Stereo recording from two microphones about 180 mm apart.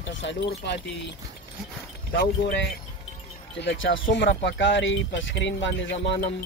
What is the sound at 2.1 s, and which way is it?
Speech, 70° left (ahead or behind).